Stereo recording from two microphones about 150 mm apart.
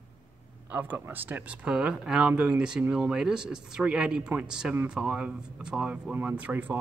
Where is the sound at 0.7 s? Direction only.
15° right (ahead or behind).